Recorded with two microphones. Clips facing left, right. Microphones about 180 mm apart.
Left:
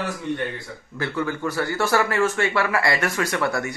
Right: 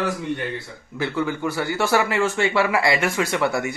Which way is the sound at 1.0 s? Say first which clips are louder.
Right 2 dB; 20° right (ahead or behind).